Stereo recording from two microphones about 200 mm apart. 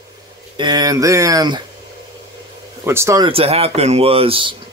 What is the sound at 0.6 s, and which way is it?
Speech, 20° right (ahead or behind).